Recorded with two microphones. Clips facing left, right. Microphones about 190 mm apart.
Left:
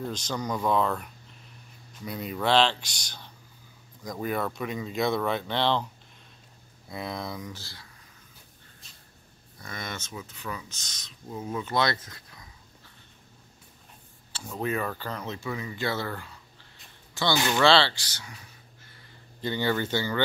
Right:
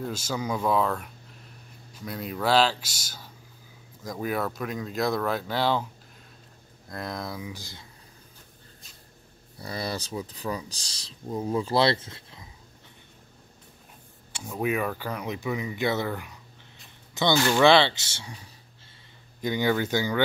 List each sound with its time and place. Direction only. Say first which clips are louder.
0.0 s speech: right 1 dB; 5° right (ahead or behind)
6.9 s speech: even; centre (ahead or behind)
7.5 s speech: right 3 dB; 15° right (ahead or behind)
9.6 s speech: right 6 dB; 35° right (ahead or behind)
14.3 s speech: right 2 dB; 10° right (ahead or behind); by 18.5 s 30° right (ahead or behind)
19.4 s speech: right 2 dB; 10° right (ahead or behind)